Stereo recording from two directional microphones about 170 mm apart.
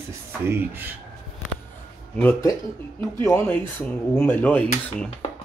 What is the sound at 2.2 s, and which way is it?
Speech, 15° left (ahead or behind).